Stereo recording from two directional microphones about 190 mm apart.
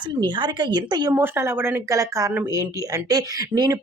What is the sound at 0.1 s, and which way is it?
Speech, 25° right (ahead or behind).